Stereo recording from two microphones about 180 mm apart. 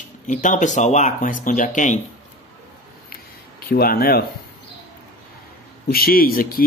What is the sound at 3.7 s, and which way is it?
Speech, 55° left (ahead or behind).